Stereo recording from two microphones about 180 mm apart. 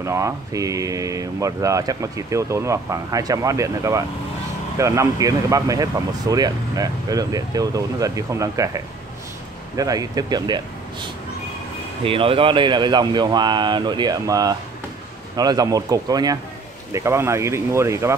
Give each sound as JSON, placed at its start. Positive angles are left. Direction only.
{"t": 0.0, "sound": "speech", "side_deg": -15}
{"t": 12.0, "sound": "speech", "side_deg": -30}